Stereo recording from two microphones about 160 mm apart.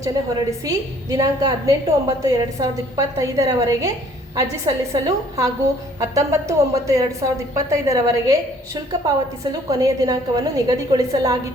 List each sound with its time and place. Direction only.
0.6 s a woman's voice: 20° right (ahead or behind)